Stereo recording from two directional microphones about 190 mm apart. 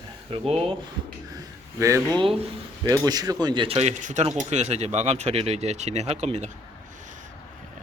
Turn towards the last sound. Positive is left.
turn(degrees=-35)  # may be behind; listen again after turning